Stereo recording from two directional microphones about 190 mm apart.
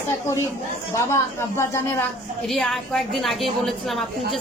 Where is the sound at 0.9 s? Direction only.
15° left (ahead or behind).